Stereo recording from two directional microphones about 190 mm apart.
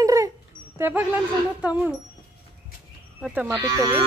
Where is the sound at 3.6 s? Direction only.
20° right (ahead or behind).